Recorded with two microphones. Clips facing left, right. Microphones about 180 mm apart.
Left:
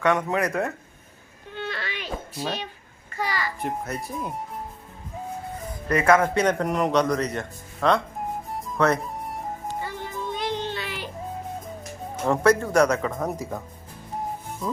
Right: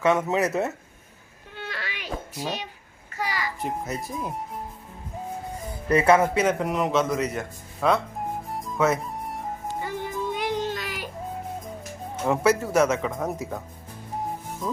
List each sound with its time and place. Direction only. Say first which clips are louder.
0.3 s speech: right 1 dB; 25° right (ahead or behind)
1.5 s babbling: left 4 dB; 10° right (ahead or behind)
3.2 s a sound: left 1 dB; 10° right (ahead or behind)
3.6 s a man's voice: even; centre (ahead or behind)
5.9 s speech: right 1 dB; 30° right (ahead or behind)
6.1 s a man's voice: even; 5° right (ahead or behind)
8.4 s music: left 1 dB; centre (ahead or behind)
9.8 s music: right 3 dB; 15° right (ahead or behind)
10.7 s music: right 1 dB; 40° right (ahead or behind)
12.2 s a man's voice: left 2 dB; 5° right (ahead or behind)